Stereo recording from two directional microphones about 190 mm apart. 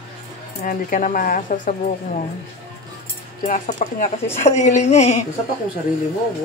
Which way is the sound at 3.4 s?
40° left (ahead or behind).